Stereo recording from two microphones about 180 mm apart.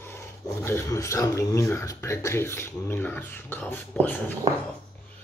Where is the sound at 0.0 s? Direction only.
15° left (ahead or behind).